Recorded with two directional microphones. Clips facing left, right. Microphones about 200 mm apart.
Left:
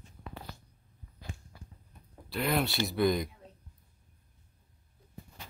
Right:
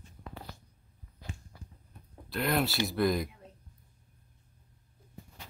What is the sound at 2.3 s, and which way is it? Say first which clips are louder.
Speech: even; centre (ahead or behind).